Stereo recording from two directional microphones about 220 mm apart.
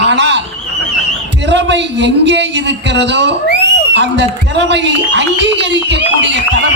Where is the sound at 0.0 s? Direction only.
50° right (ahead or behind).